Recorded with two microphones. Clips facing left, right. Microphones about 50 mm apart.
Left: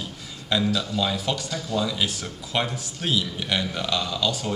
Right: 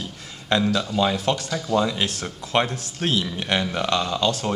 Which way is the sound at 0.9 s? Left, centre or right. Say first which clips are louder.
Right 6 dB; right.